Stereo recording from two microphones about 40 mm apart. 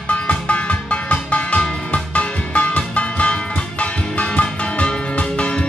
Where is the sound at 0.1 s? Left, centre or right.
Left.